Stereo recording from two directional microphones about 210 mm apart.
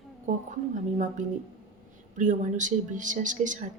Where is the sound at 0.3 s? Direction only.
35° right (ahead or behind).